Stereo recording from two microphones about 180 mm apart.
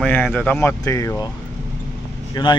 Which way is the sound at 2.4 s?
25° left (ahead or behind).